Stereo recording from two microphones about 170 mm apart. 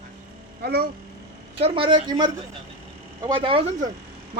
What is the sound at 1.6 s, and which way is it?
Speech, 30° right (ahead or behind).